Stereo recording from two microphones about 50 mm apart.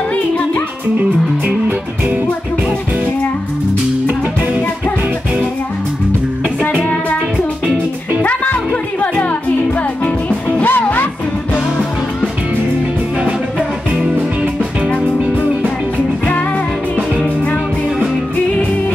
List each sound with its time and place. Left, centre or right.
0.9 s music: right
4.1 s music: right
6.8 s music: left
8.2 s music: left
14.4 s music: right
16.3 s music: left